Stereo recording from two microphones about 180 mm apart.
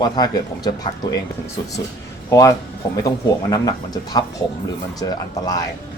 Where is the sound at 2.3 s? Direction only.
20° left (ahead or behind).